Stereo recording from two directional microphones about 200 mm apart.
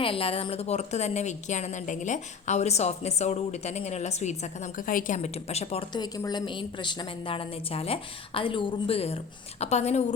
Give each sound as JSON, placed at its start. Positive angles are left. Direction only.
{"t": 0.0, "sound": "a woman's voice", "side_deg": 30}